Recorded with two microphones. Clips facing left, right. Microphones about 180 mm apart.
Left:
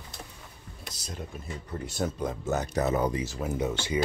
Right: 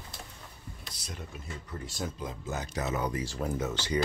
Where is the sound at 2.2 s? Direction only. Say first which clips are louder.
Left 7 dB; 65° left (ahead or behind).